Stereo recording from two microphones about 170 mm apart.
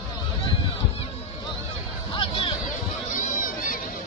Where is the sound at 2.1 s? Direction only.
30° left (ahead or behind).